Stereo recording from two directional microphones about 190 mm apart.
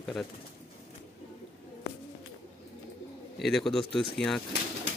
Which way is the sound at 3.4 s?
Centre (ahead or behind).